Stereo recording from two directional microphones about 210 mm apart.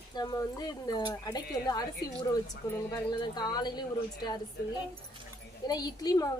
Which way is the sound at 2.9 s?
20° left (ahead or behind).